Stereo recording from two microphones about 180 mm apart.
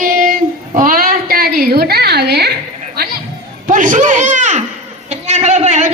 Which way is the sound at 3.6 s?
45° right (ahead or behind).